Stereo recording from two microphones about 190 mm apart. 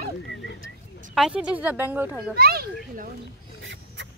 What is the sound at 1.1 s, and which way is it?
Speech, 5° right (ahead or behind).